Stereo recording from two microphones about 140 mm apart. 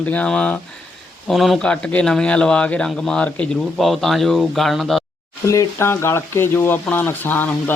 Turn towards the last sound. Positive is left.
turn(degrees=15)  # may be behind; listen again after turning